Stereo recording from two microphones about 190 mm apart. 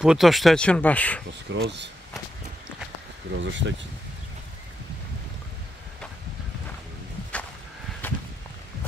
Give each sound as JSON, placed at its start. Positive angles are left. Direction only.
{"t": 0.0, "sound": "speech", "side_deg": 0}
{"t": 1.5, "sound": "speech", "side_deg": -70}
{"t": 3.3, "sound": "speech", "side_deg": -70}
{"t": 8.0, "sound": "walk", "side_deg": 10}